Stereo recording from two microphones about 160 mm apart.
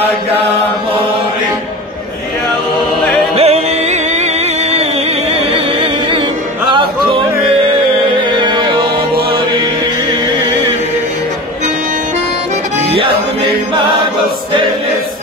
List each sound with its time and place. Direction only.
3.3 s music: 45° right (ahead or behind)
8.2 s music: 30° right (ahead or behind)
12.9 s music: 35° right (ahead or behind)